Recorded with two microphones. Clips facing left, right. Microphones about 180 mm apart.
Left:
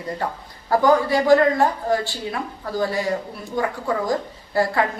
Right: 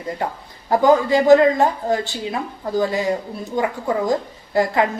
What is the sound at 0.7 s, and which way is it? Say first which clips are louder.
A woman's voice: right 2 dB; 20° right (ahead or behind).